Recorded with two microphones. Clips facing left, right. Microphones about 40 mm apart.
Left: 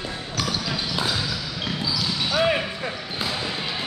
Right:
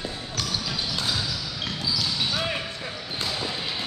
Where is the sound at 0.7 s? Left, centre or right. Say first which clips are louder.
Left 3 dB; centre.